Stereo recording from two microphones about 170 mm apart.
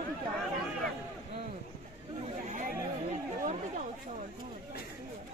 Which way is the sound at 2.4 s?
45° right (ahead or behind).